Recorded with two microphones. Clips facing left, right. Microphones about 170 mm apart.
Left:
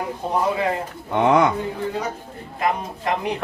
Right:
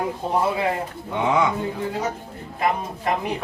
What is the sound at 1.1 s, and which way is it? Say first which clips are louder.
Speech: left 4 dB; 60° left (ahead or behind).